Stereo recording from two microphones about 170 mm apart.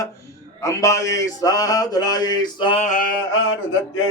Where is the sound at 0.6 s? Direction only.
20° left (ahead or behind).